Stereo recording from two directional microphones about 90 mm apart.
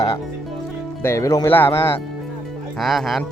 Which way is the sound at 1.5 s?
25° left (ahead or behind).